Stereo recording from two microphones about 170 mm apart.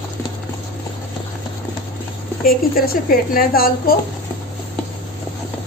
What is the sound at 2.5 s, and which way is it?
A woman's voice, 60° left (ahead or behind).